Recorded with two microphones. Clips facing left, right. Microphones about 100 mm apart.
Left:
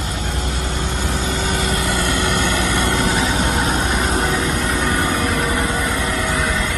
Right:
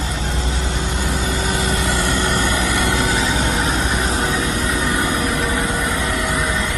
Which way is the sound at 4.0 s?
35° left (ahead or behind).